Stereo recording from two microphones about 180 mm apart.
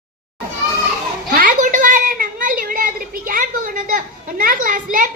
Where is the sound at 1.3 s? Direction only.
45° right (ahead or behind).